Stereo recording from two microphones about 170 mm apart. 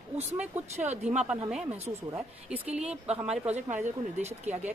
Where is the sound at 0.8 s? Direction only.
40° right (ahead or behind).